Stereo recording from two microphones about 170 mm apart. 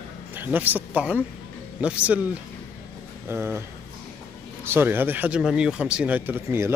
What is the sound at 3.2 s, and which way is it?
Speech, 15° right (ahead or behind).